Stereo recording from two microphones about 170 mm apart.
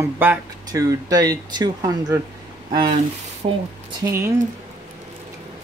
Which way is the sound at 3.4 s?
45° right (ahead or behind).